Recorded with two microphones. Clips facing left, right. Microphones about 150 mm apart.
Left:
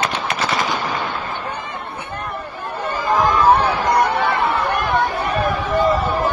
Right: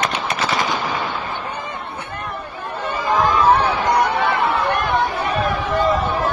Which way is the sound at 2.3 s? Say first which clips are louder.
Left 1 dB; centre (ahead or behind).